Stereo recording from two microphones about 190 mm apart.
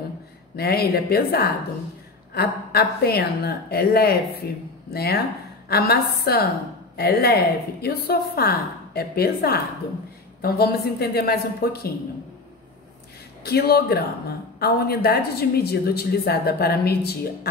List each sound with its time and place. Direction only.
0.6 s a woman's voice: 55° left (ahead or behind)
13.4 s a woman's voice: 55° left (ahead or behind)